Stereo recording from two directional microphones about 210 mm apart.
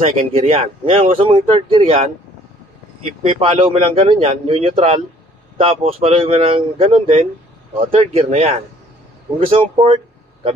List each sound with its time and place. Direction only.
0.1 s speech: 25° right (ahead or behind)
3.2 s speech: 30° right (ahead or behind)